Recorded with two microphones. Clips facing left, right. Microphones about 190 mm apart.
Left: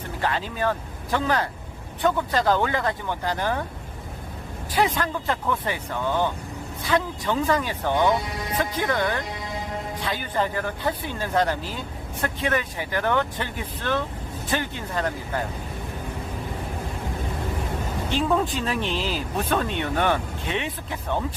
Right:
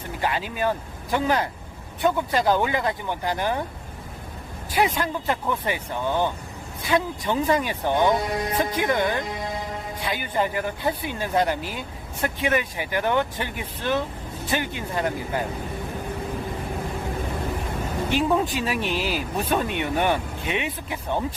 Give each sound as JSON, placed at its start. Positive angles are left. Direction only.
{"t": 0.2, "sound": "speech", "side_deg": -10}
{"t": 4.7, "sound": "speech", "side_deg": -10}
{"t": 18.1, "sound": "speech", "side_deg": -10}